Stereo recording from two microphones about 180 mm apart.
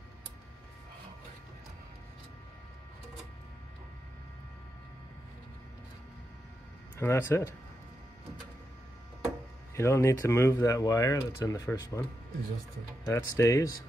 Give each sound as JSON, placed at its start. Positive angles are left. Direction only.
{"t": 7.0, "sound": "speech", "side_deg": 15}
{"t": 9.8, "sound": "speech", "side_deg": 15}
{"t": 13.0, "sound": "speech", "side_deg": 15}